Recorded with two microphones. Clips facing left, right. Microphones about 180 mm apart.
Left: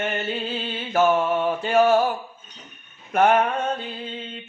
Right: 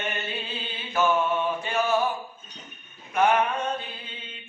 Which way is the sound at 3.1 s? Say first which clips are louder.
Left 4 dB; 55° left (ahead or behind).